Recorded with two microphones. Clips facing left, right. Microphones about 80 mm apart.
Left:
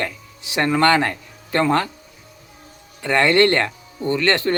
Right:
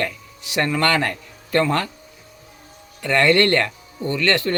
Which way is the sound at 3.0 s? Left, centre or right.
Left.